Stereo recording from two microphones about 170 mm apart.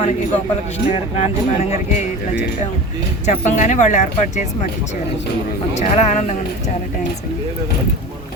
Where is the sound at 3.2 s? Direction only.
45° left (ahead or behind).